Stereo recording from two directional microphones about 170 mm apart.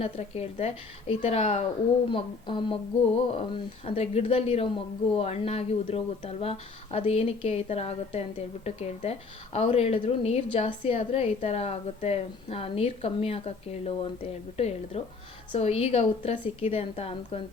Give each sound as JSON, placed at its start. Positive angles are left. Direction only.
{"t": 0.0, "sound": "a woman's voice", "side_deg": 40}